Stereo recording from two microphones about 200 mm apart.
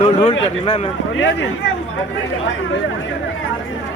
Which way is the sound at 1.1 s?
70° left (ahead or behind).